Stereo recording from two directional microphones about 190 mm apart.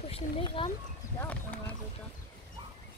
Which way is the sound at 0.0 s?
30° left (ahead or behind).